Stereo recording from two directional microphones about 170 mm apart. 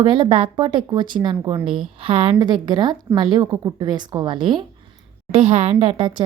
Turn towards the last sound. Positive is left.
turn(degrees=-30)  # may be behind; listen again after turning